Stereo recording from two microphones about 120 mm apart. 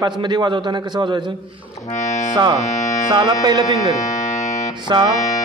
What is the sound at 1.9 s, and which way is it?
Speech, 85° left.